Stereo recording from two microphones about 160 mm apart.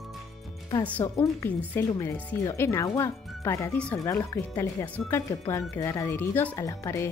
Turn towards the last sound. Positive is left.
turn(degrees=20)  # may be behind; listen again after turning